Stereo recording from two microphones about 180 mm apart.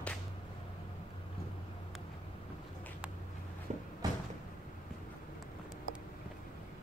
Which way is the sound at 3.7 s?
35° right (ahead or behind).